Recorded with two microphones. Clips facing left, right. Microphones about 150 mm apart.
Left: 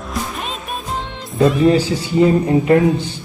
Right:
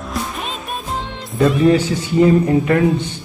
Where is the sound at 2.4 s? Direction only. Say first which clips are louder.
Left 2 dB; 25° left (ahead or behind).